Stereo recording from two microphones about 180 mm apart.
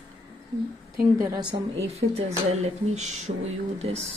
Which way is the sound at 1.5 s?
35° right (ahead or behind).